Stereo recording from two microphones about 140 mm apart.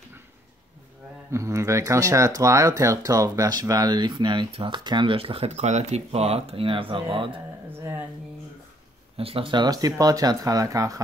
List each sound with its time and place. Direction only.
1.3 s speech: 20° right (ahead or behind); by 7.3 s 40° right (ahead or behind)
9.1 s speech: 40° right (ahead or behind); by 11.0 s 25° right (ahead or behind)